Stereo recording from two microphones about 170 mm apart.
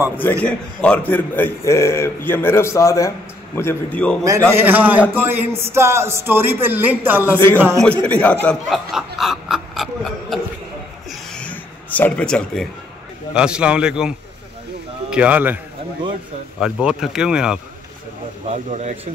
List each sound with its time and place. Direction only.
0.2 s a man's voice: 10° left (ahead or behind)
4.5 s a man's voice: 10° right (ahead or behind)
8.0 s a man's voice: 10° left (ahead or behind)
8.9 s a sound: centre (ahead or behind)
13.3 s a man's voice: 5° right (ahead or behind)
18.7 s a man's voice: 40° right (ahead or behind)